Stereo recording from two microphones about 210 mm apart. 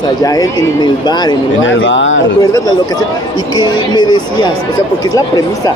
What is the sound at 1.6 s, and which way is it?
Speech, 60° left (ahead or behind).